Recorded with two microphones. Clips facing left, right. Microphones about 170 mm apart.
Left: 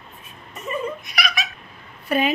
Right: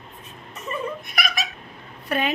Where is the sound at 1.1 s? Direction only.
50° right (ahead or behind).